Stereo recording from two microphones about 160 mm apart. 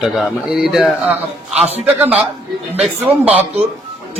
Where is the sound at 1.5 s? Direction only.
40° right (ahead or behind).